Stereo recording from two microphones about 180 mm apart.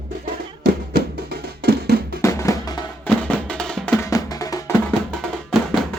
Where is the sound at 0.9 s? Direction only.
60° right (ahead or behind).